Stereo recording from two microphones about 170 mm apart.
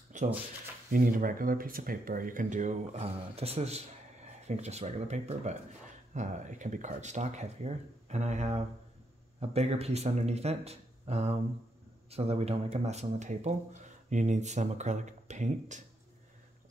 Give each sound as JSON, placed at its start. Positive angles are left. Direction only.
{"t": 0.1, "sound": "speech", "side_deg": -45}